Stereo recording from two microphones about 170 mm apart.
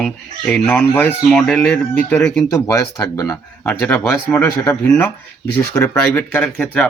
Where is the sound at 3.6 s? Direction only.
10° left (ahead or behind).